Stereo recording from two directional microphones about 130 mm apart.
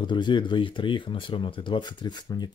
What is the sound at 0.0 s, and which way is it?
Speech, 35° left (ahead or behind).